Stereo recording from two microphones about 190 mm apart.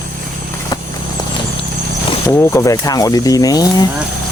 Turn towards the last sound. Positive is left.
turn(degrees=20)  # may be behind; listen again after turning